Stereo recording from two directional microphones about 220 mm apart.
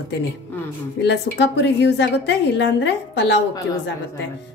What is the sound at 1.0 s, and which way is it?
A woman's voice, 50° left (ahead or behind).